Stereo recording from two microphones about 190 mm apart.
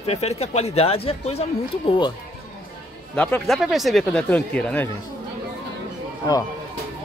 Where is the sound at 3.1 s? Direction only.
5° left (ahead or behind).